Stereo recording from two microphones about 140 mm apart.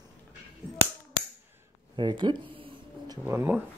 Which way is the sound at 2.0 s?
35° right (ahead or behind).